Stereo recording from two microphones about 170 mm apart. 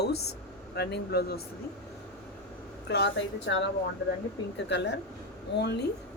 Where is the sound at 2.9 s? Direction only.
85° left.